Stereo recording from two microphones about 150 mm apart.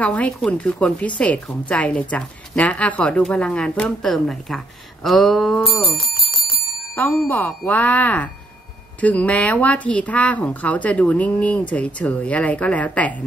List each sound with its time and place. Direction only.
0.0 s speech: 10° left (ahead or behind)
5.0 s a sound: centre (ahead or behind)
5.9 s bell: 35° right (ahead or behind)
7.0 s speech: 10° left (ahead or behind)